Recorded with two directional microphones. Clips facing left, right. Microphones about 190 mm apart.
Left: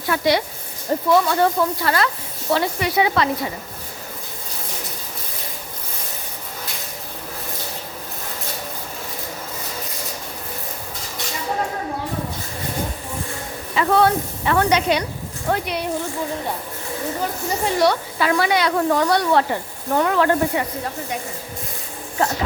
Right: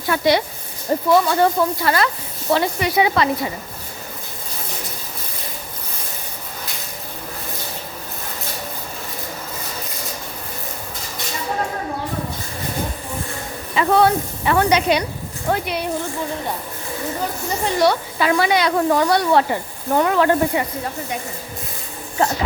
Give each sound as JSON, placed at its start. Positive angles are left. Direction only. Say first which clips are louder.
{"t": 0.1, "sound": "speech", "louder": "right 2 dB", "side_deg": -25}
{"t": 13.7, "sound": "a sound", "louder": "right 1 dB", "side_deg": -15}
{"t": 15.4, "sound": "speech", "louder": "right 1 dB", "side_deg": -5}
{"t": 17.7, "sound": "speech", "louder": "right 1 dB", "side_deg": 0}
{"t": 18.2, "sound": "speech", "louder": "right 2 dB", "side_deg": -20}